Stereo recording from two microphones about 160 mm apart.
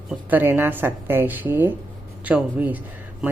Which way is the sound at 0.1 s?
10° right (ahead or behind).